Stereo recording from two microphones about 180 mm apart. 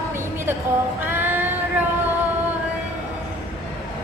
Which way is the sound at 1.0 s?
10° right (ahead or behind).